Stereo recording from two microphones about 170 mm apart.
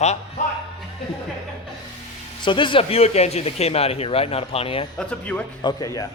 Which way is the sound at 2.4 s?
30° left (ahead or behind).